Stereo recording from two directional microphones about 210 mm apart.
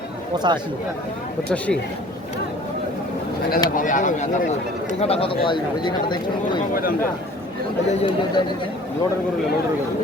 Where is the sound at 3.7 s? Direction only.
40° left (ahead or behind); by 6.6 s 20° left (ahead or behind).